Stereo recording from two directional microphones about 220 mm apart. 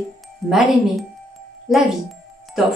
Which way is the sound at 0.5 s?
Centre (ahead or behind).